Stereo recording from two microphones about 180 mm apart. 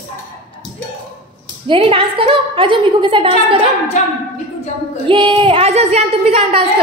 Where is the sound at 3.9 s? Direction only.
40° left (ahead or behind).